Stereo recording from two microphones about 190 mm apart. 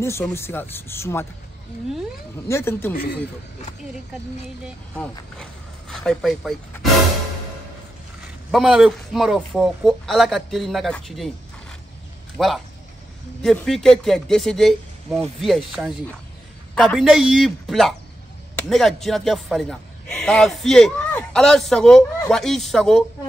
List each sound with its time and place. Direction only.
0.0 s speech: 15° left (ahead or behind)
2.4 s speech: 15° left (ahead or behind)
2.9 s a man's voice: 55° left (ahead or behind)
5.4 s a sound: 5° left (ahead or behind)
8.5 s speech: centre (ahead or behind)
12.4 s speech: centre (ahead or behind)